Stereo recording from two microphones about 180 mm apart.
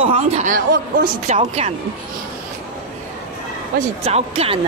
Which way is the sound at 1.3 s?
35° right (ahead or behind).